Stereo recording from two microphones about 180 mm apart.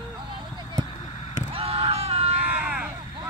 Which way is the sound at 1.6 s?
35° right (ahead or behind).